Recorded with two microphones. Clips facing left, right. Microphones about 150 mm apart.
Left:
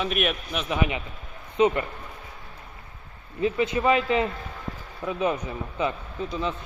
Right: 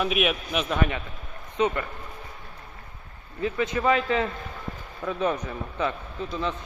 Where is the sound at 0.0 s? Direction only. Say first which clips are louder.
Right 2 dB; centre (ahead or behind).